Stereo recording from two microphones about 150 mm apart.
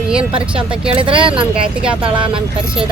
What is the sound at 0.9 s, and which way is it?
Speech, 35° right (ahead or behind).